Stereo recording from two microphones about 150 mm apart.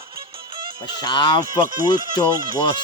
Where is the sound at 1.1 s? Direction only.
30° left (ahead or behind).